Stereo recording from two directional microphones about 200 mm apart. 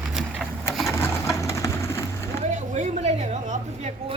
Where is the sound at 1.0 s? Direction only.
15° left (ahead or behind).